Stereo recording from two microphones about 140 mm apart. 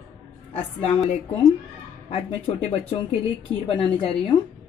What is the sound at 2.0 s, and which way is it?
A woman's voice, 45° left (ahead or behind).